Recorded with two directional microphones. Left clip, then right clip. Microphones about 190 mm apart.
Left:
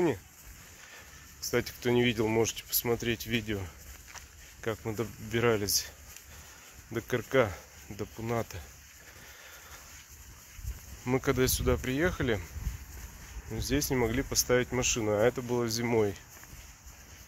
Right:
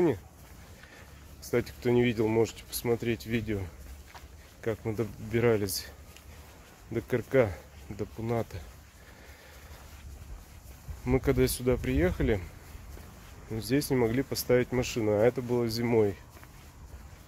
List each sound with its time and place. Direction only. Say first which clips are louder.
1.5 s speech: right 1 dB; centre (ahead or behind)
11.1 s speech: right 1 dB; centre (ahead or behind)
13.5 s speech: right 2 dB; 5° right (ahead or behind)